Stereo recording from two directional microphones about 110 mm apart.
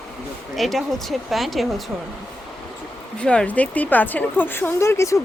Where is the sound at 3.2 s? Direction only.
10° left (ahead or behind); by 5.2 s 25° left (ahead or behind).